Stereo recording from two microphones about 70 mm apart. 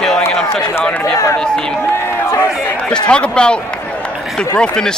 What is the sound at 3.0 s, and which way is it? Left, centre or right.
Speech, centre.